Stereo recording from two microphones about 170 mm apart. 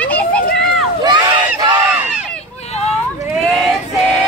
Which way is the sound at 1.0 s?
25° right (ahead or behind).